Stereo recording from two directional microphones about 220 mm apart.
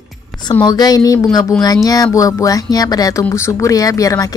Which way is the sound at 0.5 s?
20° left (ahead or behind).